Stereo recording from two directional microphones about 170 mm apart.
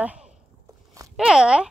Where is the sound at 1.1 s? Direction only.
5° right (ahead or behind).